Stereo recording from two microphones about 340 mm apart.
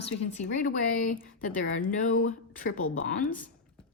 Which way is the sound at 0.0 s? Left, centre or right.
Left.